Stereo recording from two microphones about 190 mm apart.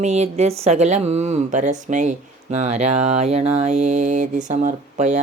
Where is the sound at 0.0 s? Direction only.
35° right (ahead or behind).